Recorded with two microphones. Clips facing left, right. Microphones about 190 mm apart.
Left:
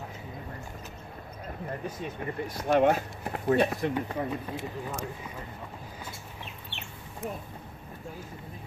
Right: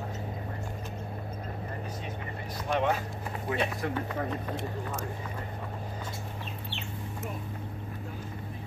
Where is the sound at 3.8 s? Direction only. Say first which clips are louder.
Left 2 dB; 10° left (ahead or behind).